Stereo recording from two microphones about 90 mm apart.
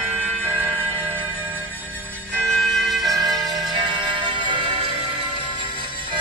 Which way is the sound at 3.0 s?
45° right (ahead or behind).